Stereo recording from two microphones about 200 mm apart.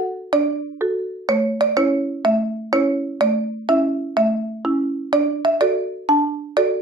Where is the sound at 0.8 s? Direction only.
10° right (ahead or behind).